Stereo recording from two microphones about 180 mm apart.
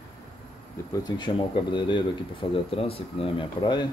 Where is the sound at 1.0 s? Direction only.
25° left (ahead or behind).